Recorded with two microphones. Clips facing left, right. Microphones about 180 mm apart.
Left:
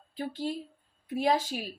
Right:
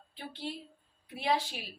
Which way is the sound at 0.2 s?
45° left (ahead or behind).